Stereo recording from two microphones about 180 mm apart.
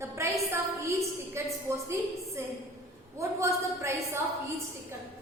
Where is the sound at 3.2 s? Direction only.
15° right (ahead or behind).